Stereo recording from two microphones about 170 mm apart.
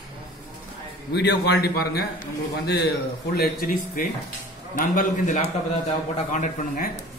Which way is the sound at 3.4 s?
55° left (ahead or behind).